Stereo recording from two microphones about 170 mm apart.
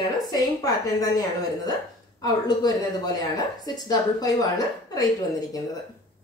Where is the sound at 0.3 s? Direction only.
20° left (ahead or behind).